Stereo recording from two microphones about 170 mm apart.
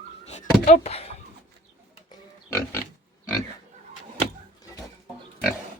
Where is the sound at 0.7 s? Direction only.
35° left (ahead or behind).